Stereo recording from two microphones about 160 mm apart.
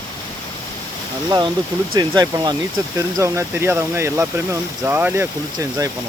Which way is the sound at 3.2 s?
15° right (ahead or behind).